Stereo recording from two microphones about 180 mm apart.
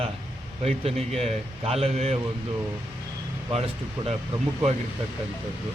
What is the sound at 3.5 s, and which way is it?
Speech, 35° right (ahead or behind).